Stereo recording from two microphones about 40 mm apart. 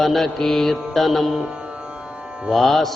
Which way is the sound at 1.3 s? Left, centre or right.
Right.